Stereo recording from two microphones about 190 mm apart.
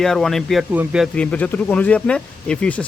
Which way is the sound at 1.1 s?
5° left (ahead or behind).